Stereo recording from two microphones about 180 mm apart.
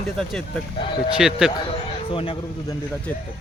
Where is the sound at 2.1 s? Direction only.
30° left (ahead or behind).